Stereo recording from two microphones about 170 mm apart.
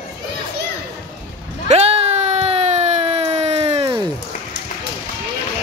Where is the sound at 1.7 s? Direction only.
35° right (ahead or behind).